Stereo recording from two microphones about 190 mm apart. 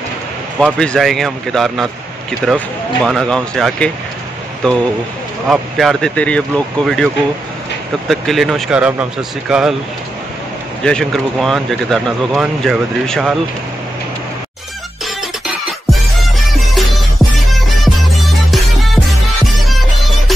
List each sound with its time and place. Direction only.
0.6 s speech: 5° left (ahead or behind)
8.1 s speech: centre (ahead or behind)
10.8 s speech: 5° left (ahead or behind)
16.5 s music: centre (ahead or behind)